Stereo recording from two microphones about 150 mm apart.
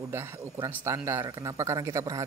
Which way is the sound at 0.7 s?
15° right (ahead or behind).